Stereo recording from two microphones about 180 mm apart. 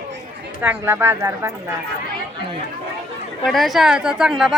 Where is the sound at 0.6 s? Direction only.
10° right (ahead or behind).